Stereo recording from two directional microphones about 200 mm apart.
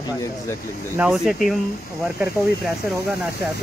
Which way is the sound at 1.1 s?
Centre (ahead or behind).